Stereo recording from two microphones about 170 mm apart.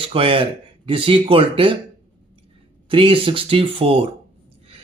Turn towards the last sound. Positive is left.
turn(degrees=-35)  # may be behind; listen again after turning